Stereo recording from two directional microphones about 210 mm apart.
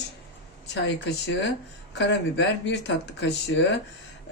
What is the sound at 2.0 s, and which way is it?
Speech, 60° left (ahead or behind).